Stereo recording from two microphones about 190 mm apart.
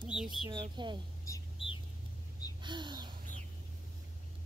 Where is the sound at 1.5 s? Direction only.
25° left (ahead or behind).